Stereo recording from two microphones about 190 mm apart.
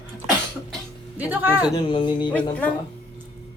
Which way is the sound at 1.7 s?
25° left (ahead or behind).